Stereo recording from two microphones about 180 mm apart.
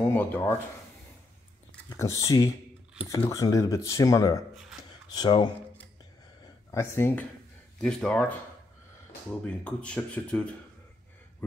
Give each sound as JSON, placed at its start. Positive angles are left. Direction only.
{"t": 0.1, "sound": "speech", "side_deg": 10}
{"t": 1.9, "sound": "speech", "side_deg": 15}
{"t": 3.0, "sound": "speech", "side_deg": 30}
{"t": 3.3, "sound": "speech", "side_deg": 20}
{"t": 6.4, "sound": "a sound", "side_deg": 15}
{"t": 7.8, "sound": "speech", "side_deg": 5}